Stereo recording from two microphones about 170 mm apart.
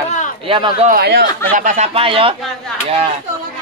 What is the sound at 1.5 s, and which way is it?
Speech, 50° right (ahead or behind).